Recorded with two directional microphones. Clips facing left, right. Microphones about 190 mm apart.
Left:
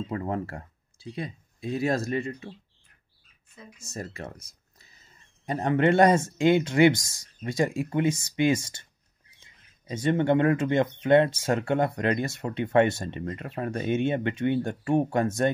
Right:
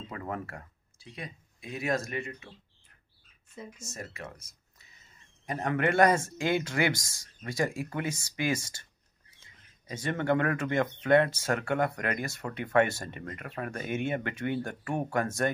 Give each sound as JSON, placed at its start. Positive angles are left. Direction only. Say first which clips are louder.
{"t": 0.1, "sound": "speech", "louder": "left 4 dB", "side_deg": 30}
{"t": 3.8, "sound": "speech", "louder": "left 9 dB", "side_deg": 30}
{"t": 9.8, "sound": "speech", "louder": "left 6 dB", "side_deg": 20}